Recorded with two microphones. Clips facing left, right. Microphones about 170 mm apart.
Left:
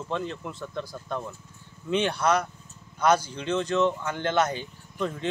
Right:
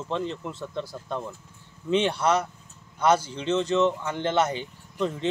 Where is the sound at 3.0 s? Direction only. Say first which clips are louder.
Right 1 dB; 25° right (ahead or behind).